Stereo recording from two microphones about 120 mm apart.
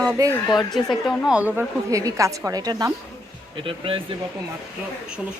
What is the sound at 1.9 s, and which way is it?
A woman's voice, 25° right (ahead or behind).